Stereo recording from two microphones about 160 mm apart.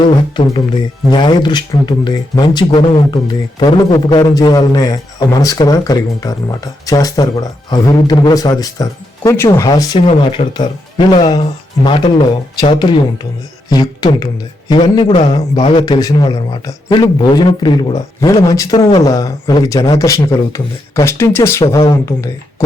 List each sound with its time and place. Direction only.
0.4 s speech: 30° left (ahead or behind)
15.1 s speech: 40° left (ahead or behind)
15.7 s speech: 25° left (ahead or behind)